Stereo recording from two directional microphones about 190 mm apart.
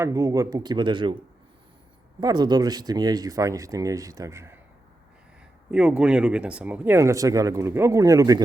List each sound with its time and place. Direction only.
0.0 s speech: 15° right (ahead or behind)
2.2 s speech: 20° right (ahead or behind)
5.7 s speech: 5° right (ahead or behind)